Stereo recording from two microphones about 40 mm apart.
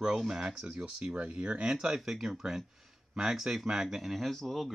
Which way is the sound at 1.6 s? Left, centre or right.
Centre.